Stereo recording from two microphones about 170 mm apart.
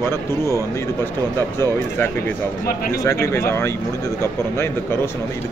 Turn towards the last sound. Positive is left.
turn(degrees=15)  # may be behind; listen again after turning